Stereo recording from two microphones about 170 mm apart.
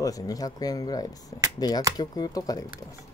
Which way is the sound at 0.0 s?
20° left (ahead or behind).